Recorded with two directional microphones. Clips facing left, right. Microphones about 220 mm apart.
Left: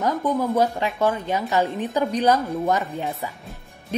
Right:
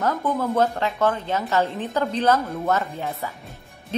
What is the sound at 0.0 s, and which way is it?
A woman's voice, 15° left (ahead or behind).